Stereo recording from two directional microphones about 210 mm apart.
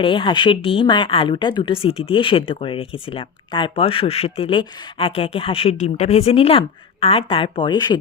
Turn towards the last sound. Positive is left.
turn(degrees=20)  # may be behind; listen again after turning